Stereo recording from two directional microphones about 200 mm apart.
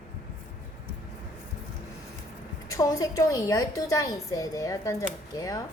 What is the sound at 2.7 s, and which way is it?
A woman's voice, 15° left (ahead or behind).